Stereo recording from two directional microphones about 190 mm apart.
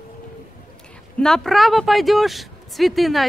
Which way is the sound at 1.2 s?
Centre (ahead or behind).